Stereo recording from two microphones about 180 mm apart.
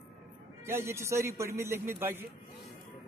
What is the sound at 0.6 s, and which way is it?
A man's voice, 15° right (ahead or behind).